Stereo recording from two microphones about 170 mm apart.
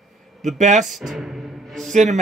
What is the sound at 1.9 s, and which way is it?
Speech, 45° right (ahead or behind).